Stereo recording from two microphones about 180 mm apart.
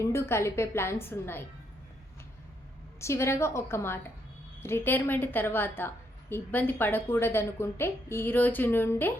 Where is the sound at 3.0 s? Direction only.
15° left (ahead or behind).